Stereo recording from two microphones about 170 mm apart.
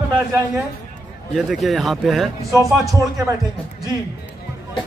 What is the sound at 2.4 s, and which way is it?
Speech, 20° right (ahead or behind).